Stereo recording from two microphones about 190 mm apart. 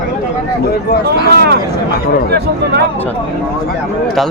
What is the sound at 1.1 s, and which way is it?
Speech, 60° right (ahead or behind).